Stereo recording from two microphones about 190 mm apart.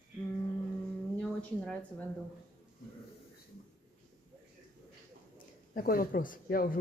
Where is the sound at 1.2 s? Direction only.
5° left (ahead or behind).